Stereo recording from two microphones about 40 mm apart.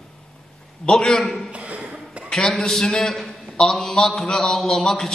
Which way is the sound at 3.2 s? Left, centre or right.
Centre.